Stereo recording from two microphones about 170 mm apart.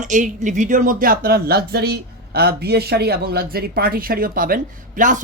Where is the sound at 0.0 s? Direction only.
50° right (ahead or behind).